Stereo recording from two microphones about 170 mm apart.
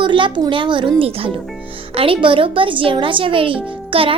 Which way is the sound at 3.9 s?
30° right (ahead or behind).